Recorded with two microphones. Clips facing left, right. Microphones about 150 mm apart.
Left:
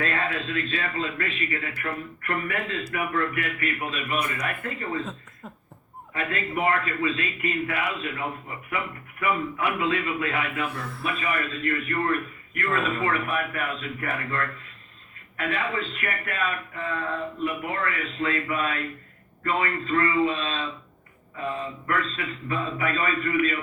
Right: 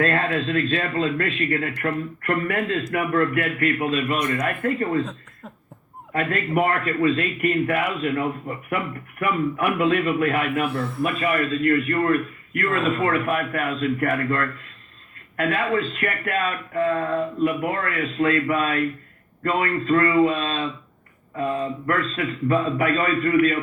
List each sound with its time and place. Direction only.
0.0 s speech: 50° right (ahead or behind)
6.1 s a man's voice: 60° right (ahead or behind)
9.6 s a man's voice: 55° right (ahead or behind)
11.0 s speech: 40° right (ahead or behind)